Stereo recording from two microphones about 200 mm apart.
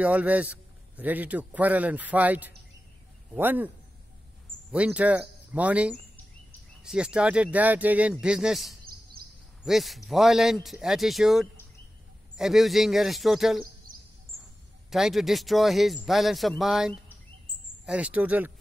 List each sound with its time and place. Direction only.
0.0 s a man's voice: 5° right (ahead or behind)
4.7 s a man's voice: 5° right (ahead or behind)
13.9 s a sound: 45° right (ahead or behind)
14.9 s a man's voice: centre (ahead or behind)